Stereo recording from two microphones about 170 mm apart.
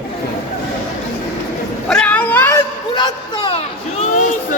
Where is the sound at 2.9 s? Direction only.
30° left (ahead or behind); by 4.6 s 45° left (ahead or behind).